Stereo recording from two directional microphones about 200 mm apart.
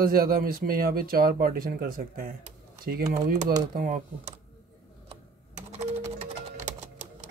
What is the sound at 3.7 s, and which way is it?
Speech, 40° right (ahead or behind).